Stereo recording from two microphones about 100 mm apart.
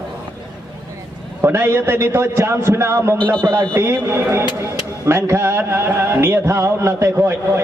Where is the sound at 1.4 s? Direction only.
25° right (ahead or behind).